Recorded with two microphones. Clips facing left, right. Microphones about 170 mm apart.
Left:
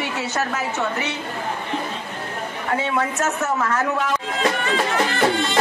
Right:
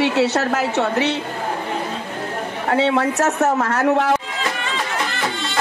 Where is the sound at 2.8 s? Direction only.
75° right (ahead or behind).